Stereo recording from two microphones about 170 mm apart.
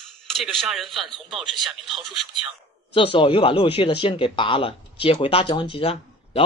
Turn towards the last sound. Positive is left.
turn(degrees=35)  # may be behind; listen again after turning